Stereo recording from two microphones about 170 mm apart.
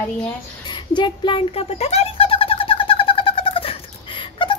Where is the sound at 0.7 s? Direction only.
25° left (ahead or behind).